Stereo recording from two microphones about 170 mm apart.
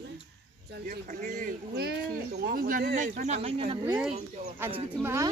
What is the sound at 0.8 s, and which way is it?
Speech, 55° right (ahead or behind).